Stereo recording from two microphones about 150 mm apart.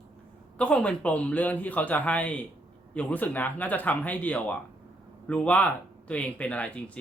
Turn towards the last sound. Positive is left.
turn(degrees=10)  # may be behind; listen again after turning